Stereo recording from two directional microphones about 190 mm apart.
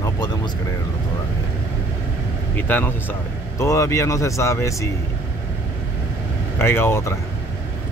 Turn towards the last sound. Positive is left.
turn(degrees=15)  # may be behind; listen again after turning